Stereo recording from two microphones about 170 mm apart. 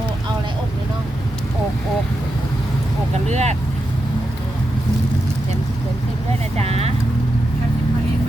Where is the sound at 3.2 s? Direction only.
45° right (ahead or behind).